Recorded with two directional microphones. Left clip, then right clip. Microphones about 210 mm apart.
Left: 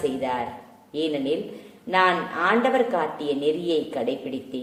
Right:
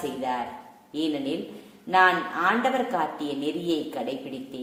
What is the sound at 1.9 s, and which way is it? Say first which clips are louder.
A woman's voice: even; 20° right (ahead or behind).